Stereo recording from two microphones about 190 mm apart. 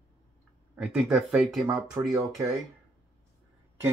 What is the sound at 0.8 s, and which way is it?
Speech, 5° right (ahead or behind).